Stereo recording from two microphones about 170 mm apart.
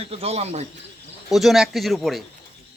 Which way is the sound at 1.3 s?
Centre (ahead or behind).